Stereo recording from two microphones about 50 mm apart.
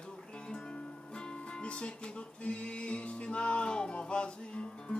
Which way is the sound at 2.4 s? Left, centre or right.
Left.